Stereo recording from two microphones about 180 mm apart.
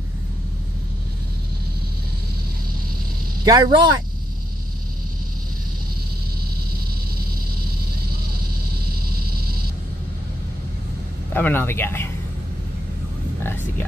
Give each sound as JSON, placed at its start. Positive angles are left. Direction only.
{"t": 3.4, "sound": "speech", "side_deg": -25}
{"t": 11.3, "sound": "speech", "side_deg": 10}
{"t": 13.4, "sound": "a sound", "side_deg": 10}